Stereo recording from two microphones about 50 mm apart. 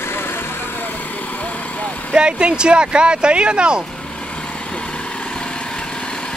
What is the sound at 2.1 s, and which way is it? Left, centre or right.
Speech, centre.